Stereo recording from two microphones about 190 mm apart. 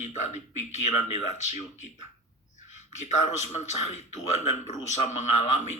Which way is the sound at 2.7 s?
35° left (ahead or behind).